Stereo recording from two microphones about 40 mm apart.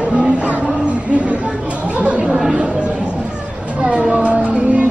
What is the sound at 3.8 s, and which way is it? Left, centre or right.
Cat, right.